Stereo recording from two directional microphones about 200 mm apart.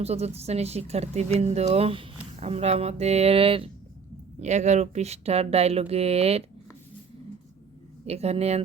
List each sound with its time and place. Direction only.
0.0 s speech: 30° right (ahead or behind)
8.0 s speech: 30° right (ahead or behind)